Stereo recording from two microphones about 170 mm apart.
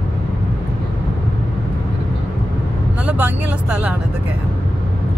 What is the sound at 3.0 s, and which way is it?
Vehicle, 10° right (ahead or behind).